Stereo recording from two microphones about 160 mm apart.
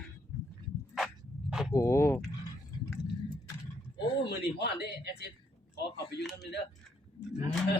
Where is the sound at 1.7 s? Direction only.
20° left (ahead or behind).